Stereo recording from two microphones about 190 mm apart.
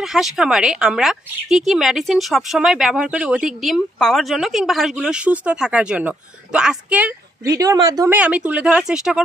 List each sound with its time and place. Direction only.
0.0 s speech: centre (ahead or behind); by 8.2 s 15° right (ahead or behind)
8.2 s speech: 5° right (ahead or behind)